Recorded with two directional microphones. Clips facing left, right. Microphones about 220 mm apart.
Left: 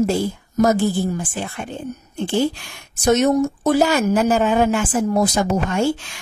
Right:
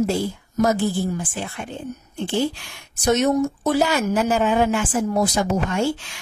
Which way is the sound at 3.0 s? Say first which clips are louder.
Left 3 dB; 45° left (ahead or behind).